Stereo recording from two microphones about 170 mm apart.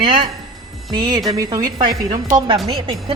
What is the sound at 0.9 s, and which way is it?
A woman's voice, 25° right (ahead or behind).